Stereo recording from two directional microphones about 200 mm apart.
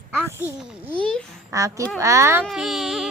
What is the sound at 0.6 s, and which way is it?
Speech, 5° right (ahead or behind).